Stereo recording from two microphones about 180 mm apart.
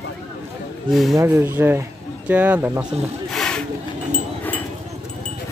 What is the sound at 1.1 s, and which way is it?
Speech, 15° right (ahead or behind).